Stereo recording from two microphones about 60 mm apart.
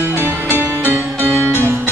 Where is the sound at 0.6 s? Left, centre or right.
Right.